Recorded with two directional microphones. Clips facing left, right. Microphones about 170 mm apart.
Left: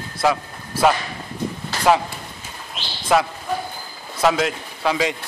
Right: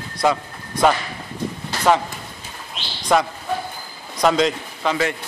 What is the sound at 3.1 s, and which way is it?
A man's voice, 5° left (ahead or behind).